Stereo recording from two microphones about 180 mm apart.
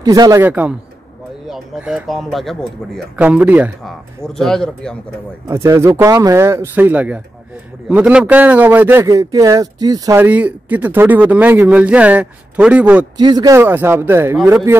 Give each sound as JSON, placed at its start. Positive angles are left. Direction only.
{"t": 0.0, "sound": "speech", "side_deg": -20}
{"t": 5.5, "sound": "speech", "side_deg": -15}
{"t": 13.2, "sound": "speech", "side_deg": -20}
{"t": 13.6, "sound": "speech", "side_deg": -10}